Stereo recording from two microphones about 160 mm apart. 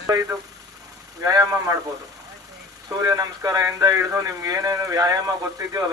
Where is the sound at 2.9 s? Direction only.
20° right (ahead or behind).